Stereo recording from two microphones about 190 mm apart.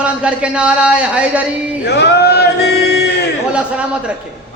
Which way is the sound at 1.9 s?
60° left (ahead or behind).